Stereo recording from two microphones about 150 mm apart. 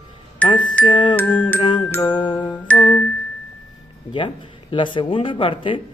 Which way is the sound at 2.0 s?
30° left (ahead or behind).